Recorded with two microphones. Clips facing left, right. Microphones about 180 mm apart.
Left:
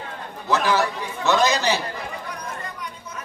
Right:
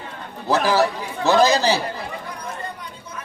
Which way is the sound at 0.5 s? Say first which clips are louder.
Right 3 dB; 35° right (ahead or behind).